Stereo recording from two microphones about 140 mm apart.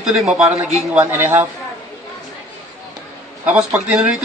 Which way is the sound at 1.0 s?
15° right (ahead or behind).